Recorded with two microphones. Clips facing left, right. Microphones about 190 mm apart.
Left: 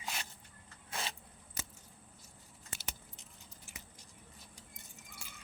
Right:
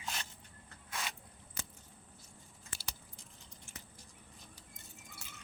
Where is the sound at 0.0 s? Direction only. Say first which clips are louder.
Even; 5° left (ahead or behind).